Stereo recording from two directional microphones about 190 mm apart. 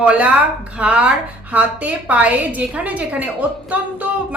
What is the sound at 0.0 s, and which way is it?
A woman's voice, 5° right (ahead or behind).